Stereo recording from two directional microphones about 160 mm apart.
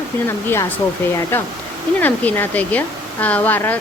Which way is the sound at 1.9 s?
10° left (ahead or behind).